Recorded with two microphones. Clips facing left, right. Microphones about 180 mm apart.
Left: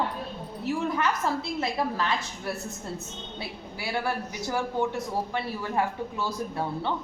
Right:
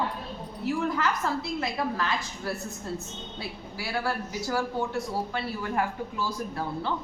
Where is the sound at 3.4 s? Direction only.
20° left (ahead or behind).